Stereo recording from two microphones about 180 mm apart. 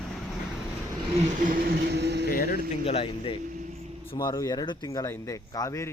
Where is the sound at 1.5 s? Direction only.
55° right (ahead or behind).